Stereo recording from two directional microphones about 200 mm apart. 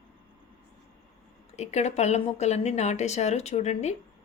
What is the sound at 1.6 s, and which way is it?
A woman's voice, 35° left (ahead or behind).